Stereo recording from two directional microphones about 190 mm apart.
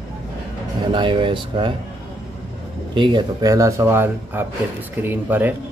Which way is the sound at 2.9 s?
25° right (ahead or behind).